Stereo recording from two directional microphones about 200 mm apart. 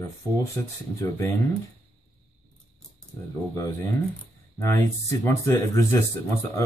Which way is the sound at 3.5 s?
15° left (ahead or behind).